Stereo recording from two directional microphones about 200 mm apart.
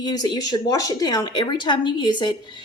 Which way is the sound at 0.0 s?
20° left (ahead or behind).